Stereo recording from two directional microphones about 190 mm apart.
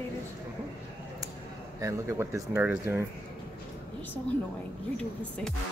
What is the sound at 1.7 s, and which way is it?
Speech, 15° right (ahead or behind).